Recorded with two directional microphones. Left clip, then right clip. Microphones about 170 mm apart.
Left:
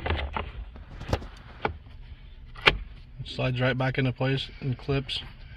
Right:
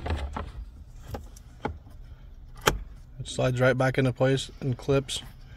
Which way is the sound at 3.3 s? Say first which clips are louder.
Right 4 dB; 60° right (ahead or behind).